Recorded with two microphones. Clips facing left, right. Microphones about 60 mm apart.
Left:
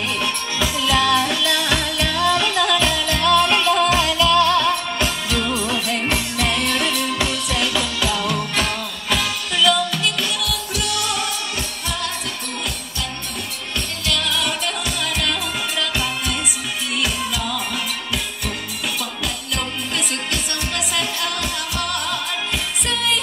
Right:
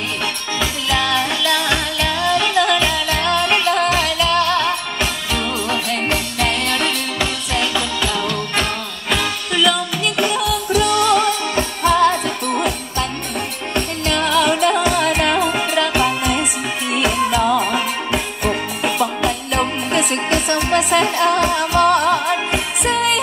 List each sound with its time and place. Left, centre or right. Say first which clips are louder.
0.6 s music: left 1 dB; right
9.1 s music: right 3 dB; centre
10.7 s music: right 13 dB; right
14.0 s music: right 7 dB; right